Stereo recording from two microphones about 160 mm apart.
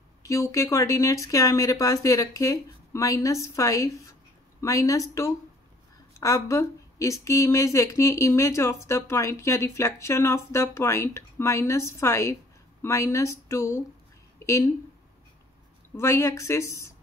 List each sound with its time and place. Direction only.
0.2 s a woman's voice: 20° left (ahead or behind)
6.1 s a woman's voice: 20° left (ahead or behind)
16.0 s a woman's voice: 15° left (ahead or behind)